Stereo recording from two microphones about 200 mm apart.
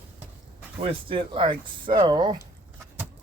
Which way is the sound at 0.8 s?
25° right (ahead or behind).